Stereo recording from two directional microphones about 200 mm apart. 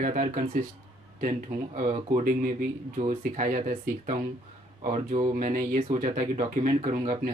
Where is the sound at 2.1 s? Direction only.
40° right (ahead or behind).